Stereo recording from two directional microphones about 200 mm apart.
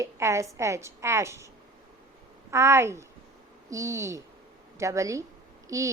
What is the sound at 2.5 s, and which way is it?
A woman's voice, 15° right (ahead or behind).